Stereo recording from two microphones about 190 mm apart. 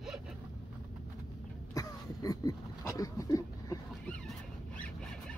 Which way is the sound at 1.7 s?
20° left (ahead or behind).